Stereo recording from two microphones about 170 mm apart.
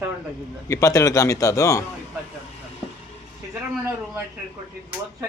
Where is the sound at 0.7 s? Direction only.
20° left (ahead or behind).